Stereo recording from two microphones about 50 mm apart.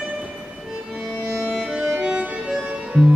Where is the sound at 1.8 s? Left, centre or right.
Centre.